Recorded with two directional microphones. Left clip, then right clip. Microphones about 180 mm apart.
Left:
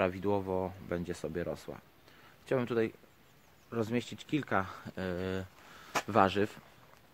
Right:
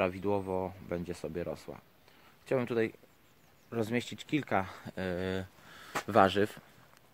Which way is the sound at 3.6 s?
50° right (ahead or behind).